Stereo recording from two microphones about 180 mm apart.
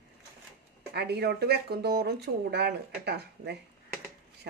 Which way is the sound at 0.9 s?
65° right (ahead or behind).